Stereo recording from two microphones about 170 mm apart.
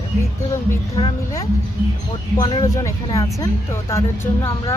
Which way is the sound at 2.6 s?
20° left (ahead or behind).